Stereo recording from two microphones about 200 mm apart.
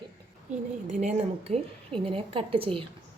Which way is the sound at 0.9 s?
35° right (ahead or behind).